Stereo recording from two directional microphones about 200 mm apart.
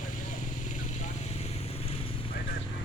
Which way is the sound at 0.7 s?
35° left (ahead or behind).